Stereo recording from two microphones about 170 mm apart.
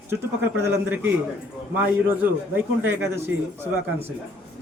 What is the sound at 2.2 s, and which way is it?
A man's voice, 10° right (ahead or behind).